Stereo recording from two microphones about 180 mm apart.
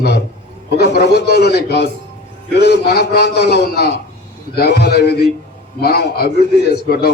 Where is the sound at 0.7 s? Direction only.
65° left (ahead or behind).